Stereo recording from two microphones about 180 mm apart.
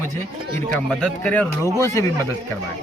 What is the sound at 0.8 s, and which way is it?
Speech, 10° left (ahead or behind).